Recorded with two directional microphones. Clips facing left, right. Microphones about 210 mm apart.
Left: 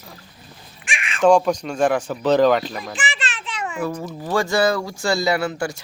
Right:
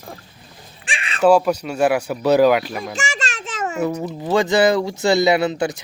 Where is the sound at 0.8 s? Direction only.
35° right (ahead or behind).